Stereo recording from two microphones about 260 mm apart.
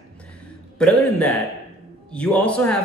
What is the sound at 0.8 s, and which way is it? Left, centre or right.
Speech, centre.